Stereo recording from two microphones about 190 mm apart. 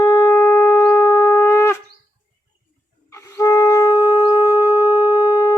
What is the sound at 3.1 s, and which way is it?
Shofar, 15° left (ahead or behind).